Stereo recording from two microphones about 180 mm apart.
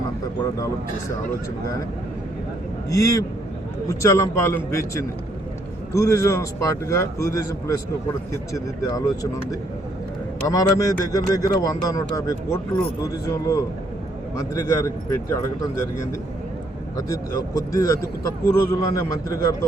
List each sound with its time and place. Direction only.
2.9 s speech: 15° left (ahead or behind)
5.9 s speech: 15° left (ahead or behind)